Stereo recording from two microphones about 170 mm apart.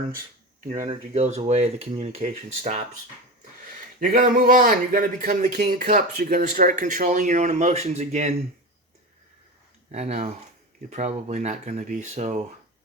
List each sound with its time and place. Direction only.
0.7 s speech: 35° right (ahead or behind)
4.0 s speech: 50° right (ahead or behind)
9.9 s speech: 40° right (ahead or behind)